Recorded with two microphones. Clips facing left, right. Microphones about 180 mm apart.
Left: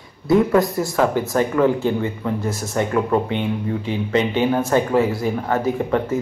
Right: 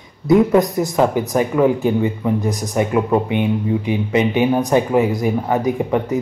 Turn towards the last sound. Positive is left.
turn(degrees=-15)  # may be behind; listen again after turning